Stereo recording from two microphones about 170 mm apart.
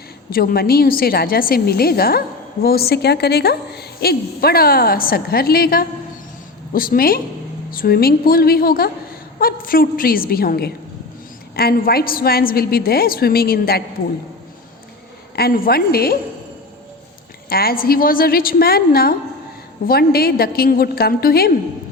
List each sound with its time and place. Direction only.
0.3 s a woman's voice: 60° left (ahead or behind)
15.4 s a woman's voice: 60° left (ahead or behind)
17.5 s a woman's voice: 60° left (ahead or behind)